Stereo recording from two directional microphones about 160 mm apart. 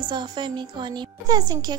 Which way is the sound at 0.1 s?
30° right (ahead or behind).